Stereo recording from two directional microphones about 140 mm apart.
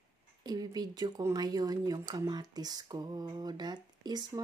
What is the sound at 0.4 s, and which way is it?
Speech, 30° right (ahead or behind).